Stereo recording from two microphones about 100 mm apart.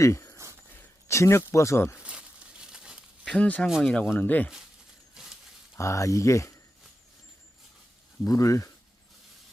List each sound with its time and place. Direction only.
0.0 s speech: 30° left (ahead or behind)
2.0 s a sound: 10° right (ahead or behind)
3.2 s speech: 10° left (ahead or behind)
4.1 s speech: 20° left (ahead or behind)
5.1 s a sound: 5° right (ahead or behind)
5.7 s speech: 30° left (ahead or behind)
8.2 s speech: 30° left (ahead or behind)